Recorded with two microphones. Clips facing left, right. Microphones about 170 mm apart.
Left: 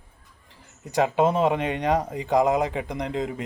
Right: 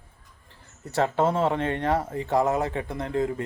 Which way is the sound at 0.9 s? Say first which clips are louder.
Left 2 dB; 15° left (ahead or behind).